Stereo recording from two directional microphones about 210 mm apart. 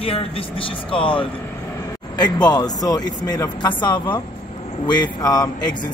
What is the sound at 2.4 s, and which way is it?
Speech, 20° left (ahead or behind).